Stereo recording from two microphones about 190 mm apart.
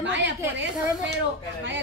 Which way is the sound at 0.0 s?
70° right (ahead or behind).